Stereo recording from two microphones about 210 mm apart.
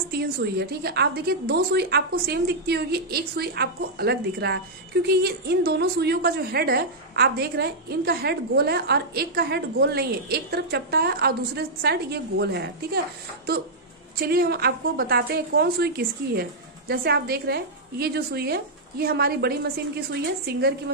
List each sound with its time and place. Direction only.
0.1 s a woman's voice: 50° right (ahead or behind)
14.1 s a woman's voice: 45° right (ahead or behind)